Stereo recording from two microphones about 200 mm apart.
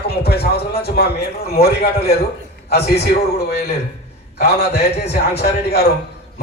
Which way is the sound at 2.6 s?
55° left (ahead or behind).